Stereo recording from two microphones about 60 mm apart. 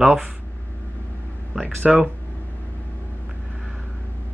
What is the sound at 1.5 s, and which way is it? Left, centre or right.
Speech, centre.